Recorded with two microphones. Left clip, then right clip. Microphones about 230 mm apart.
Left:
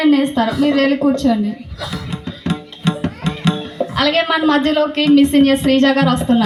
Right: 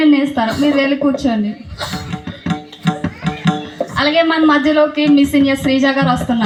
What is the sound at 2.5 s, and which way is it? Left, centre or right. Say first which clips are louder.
Tabla: right 1 dB; left.